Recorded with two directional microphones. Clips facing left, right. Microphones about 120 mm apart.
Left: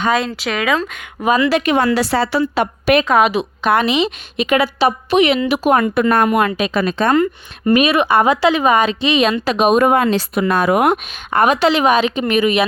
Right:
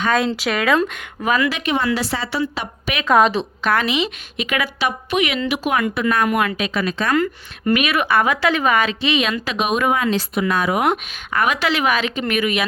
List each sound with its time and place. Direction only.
0.4 s speech: centre (ahead or behind)
1.2 s speech: 25° left (ahead or behind)
1.6 s a woman's voice: 55° left (ahead or behind)
2.1 s a woman's voice: 45° left (ahead or behind)
3.1 s a woman's voice: 5° left (ahead or behind)
3.6 s a woman's voice: 20° left (ahead or behind); by 6.2 s 50° left (ahead or behind)
6.2 s speech: 30° left (ahead or behind)
7.1 s speech: 25° left (ahead or behind)
9.9 s a woman's voice: 50° left (ahead or behind)
11.3 s speech: 30° left (ahead or behind)